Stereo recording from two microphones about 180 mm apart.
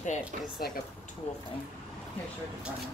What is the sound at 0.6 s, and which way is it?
Speech, 60° left (ahead or behind).